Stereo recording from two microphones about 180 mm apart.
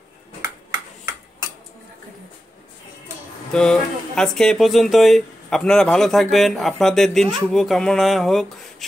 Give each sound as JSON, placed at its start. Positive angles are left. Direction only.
{"t": 3.5, "sound": "speech", "side_deg": 5}